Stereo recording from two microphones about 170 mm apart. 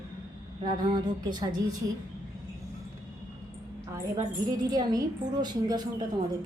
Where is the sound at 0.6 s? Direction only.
25° right (ahead or behind).